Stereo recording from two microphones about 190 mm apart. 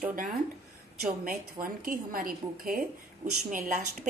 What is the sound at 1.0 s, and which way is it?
A woman's voice, 45° right (ahead or behind).